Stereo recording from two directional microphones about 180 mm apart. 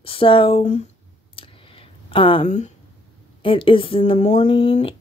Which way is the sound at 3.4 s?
30° left (ahead or behind).